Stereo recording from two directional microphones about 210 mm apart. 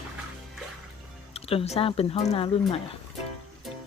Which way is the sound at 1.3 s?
30° left (ahead or behind).